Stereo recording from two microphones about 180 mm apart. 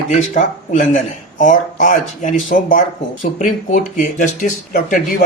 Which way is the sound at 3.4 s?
45° left (ahead or behind).